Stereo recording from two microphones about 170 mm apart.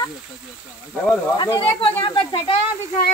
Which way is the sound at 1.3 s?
25° left (ahead or behind).